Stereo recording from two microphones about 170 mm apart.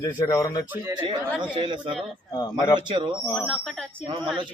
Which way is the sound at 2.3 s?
20° left (ahead or behind).